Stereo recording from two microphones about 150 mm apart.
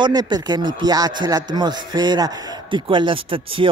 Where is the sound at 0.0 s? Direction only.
25° right (ahead or behind).